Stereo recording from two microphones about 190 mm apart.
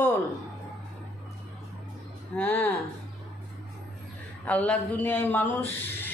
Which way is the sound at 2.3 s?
10° left (ahead or behind).